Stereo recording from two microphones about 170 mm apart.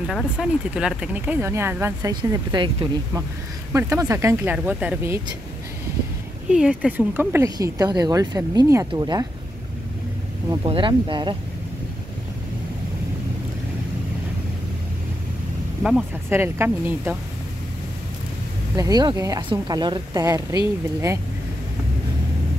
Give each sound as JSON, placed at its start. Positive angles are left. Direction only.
{"t": 0.0, "sound": "speech", "side_deg": -5}
{"t": 6.5, "sound": "speech", "side_deg": -5}
{"t": 10.6, "sound": "speech", "side_deg": -30}
{"t": 15.8, "sound": "speech", "side_deg": -10}
{"t": 18.8, "sound": "speech", "side_deg": -20}